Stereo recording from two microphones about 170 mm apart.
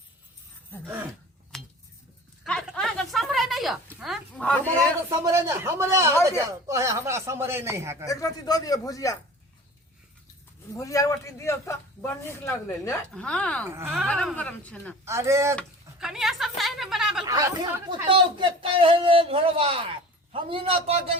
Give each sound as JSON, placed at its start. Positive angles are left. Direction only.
{"t": 1.5, "sound": "cutlery", "side_deg": 0}
{"t": 2.4, "sound": "a sound", "side_deg": 0}
{"t": 5.2, "sound": "a man's voice", "side_deg": -15}
{"t": 8.0, "sound": "speech", "side_deg": 20}
{"t": 10.8, "sound": "a man's voice", "side_deg": 20}
{"t": 13.7, "sound": "a man's voice", "side_deg": -15}
{"t": 13.9, "sound": "a man's voice", "side_deg": 0}
{"t": 15.0, "sound": "a man's voice", "side_deg": -15}
{"t": 15.5, "sound": "speech", "side_deg": -5}
{"t": 17.2, "sound": "speech", "side_deg": -20}